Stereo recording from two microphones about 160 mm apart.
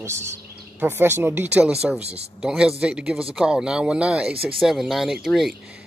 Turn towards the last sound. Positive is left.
turn(degrees=0)  # may be behind; listen again after turning